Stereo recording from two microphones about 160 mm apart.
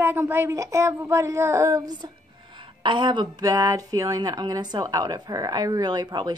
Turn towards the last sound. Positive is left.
turn(degrees=-30)  # may be behind; listen again after turning